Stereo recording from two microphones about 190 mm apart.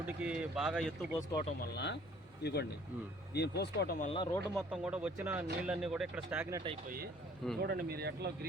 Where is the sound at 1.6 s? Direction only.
65° left (ahead or behind).